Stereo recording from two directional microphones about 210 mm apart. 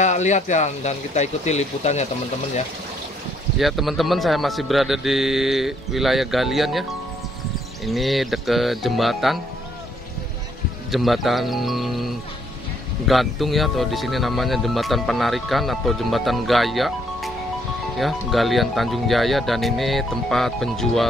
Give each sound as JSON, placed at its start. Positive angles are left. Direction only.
{"t": 0.0, "sound": "speech", "side_deg": 35}
{"t": 3.5, "sound": "speech", "side_deg": 0}
{"t": 10.9, "sound": "speech", "side_deg": 0}